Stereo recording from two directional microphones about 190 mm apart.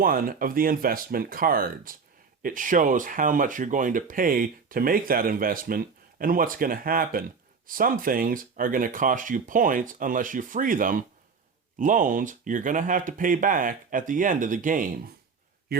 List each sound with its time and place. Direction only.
0.0 s a man's voice: 50° right (ahead or behind)